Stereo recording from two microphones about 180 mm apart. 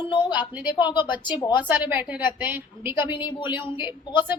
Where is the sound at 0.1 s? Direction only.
25° left (ahead or behind).